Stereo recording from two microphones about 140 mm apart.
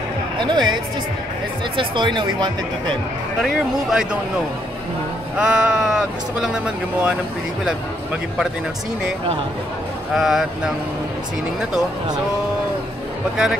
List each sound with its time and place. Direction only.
0.4 s speech: 30° right (ahead or behind)
1.8 s speech: 35° right (ahead or behind)
3.4 s speech: 5° right (ahead or behind)
5.4 s speech: 5° right (ahead or behind)
10.1 s speech: centre (ahead or behind)